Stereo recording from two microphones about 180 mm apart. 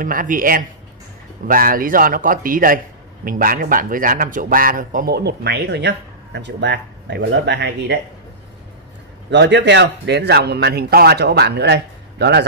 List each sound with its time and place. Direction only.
0.0 s a man's voice: 50° right (ahead or behind); by 8.0 s 70° right (ahead or behind)
9.3 s a man's voice: 75° right (ahead or behind)